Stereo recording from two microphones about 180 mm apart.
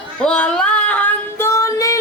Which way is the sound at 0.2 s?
5° left (ahead or behind).